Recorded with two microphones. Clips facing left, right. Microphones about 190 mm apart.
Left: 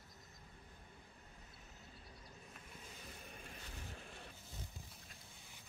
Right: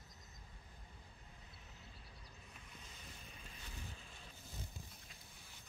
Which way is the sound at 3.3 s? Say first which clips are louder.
Left 3 dB; 55° left (ahead or behind).